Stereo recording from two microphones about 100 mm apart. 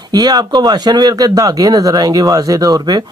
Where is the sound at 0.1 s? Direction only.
40° right (ahead or behind).